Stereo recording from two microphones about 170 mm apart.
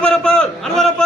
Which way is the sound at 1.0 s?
5° left (ahead or behind).